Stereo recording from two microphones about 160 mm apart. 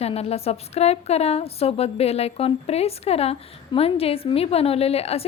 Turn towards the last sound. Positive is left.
turn(degrees=40)  # may be behind; listen again after turning